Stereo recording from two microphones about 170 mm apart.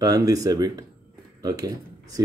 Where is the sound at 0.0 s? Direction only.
20° right (ahead or behind).